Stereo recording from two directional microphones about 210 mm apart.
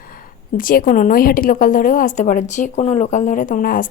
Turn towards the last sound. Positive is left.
turn(degrees=40)  # may be behind; listen again after turning